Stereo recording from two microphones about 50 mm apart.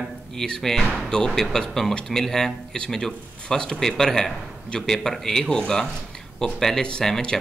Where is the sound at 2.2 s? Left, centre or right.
Centre.